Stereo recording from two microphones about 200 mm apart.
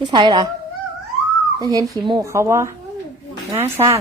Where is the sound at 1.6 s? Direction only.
20° right (ahead or behind).